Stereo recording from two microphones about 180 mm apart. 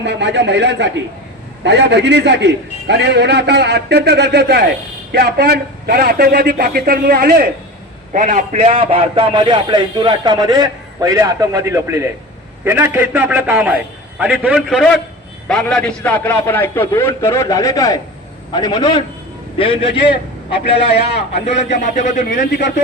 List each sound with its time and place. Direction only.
0.0 s a man's voice: 75° right (ahead or behind); by 7.4 s 55° right (ahead or behind)
8.1 s a man's voice: 45° right (ahead or behind); by 19.9 s 30° left (ahead or behind)
21.3 s a man's voice: 40° left (ahead or behind)